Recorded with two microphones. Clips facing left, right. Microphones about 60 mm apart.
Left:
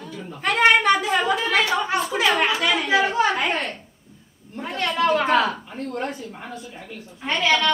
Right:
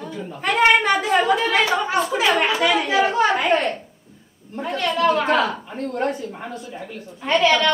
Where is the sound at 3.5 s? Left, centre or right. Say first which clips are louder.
Right 6 dB; right.